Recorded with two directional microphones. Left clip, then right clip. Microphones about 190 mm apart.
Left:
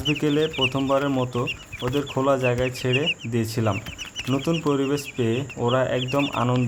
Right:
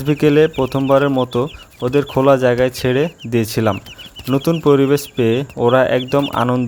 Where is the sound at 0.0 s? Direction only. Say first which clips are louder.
Right 9 dB; 35° right (ahead or behind).